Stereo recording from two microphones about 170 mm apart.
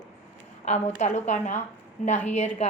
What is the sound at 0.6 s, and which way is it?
A woman's voice, 40° left (ahead or behind).